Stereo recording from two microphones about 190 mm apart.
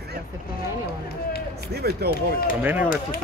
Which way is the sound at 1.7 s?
60° right (ahead or behind).